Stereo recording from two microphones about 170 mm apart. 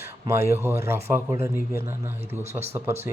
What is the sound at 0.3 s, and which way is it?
Speech, 15° right (ahead or behind).